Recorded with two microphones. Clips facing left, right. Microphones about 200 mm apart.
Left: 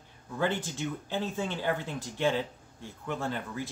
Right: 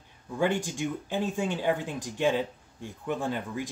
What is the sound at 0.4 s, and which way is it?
Speech, 15° right (ahead or behind).